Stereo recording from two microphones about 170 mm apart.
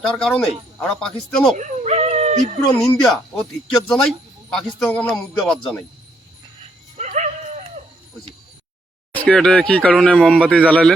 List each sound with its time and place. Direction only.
0.0 s speech: 5° left (ahead or behind)
1.5 s dog: 45° right (ahead or behind)
2.6 s speech: 5° left (ahead or behind)
6.9 s dog: 45° right (ahead or behind)
9.1 s speech: 5° left (ahead or behind)